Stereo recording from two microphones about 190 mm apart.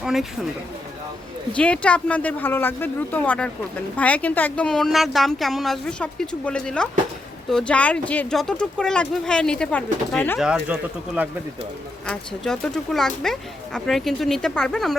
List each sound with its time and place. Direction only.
0.0 s speech: centre (ahead or behind)
1.5 s speech: 5° left (ahead or behind)
10.4 s speech: 5° right (ahead or behind)
12.0 s speech: 5° left (ahead or behind)